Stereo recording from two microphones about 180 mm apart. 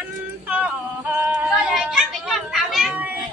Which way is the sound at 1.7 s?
5° right (ahead or behind).